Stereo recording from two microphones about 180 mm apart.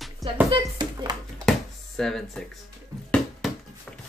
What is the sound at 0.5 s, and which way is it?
Speech, 25° right (ahead or behind).